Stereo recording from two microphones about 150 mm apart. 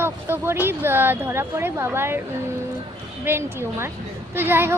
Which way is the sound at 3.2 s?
15° right (ahead or behind).